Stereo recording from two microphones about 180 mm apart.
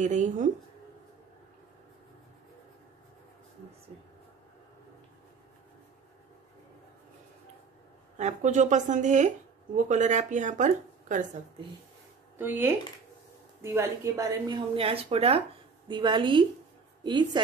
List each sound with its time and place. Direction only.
0.0 s speech: 40° right (ahead or behind)
8.2 s speech: 40° right (ahead or behind)
12.4 s a woman's voice: 10° right (ahead or behind)
14.5 s a woman's voice: 30° right (ahead or behind)